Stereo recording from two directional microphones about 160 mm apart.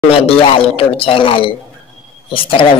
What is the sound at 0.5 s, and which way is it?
Speech, 35° left (ahead or behind).